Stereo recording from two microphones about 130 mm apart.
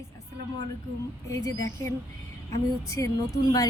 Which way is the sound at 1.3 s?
25° left (ahead or behind).